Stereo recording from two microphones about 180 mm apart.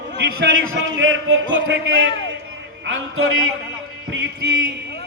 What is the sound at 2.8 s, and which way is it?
Speech, 90° right.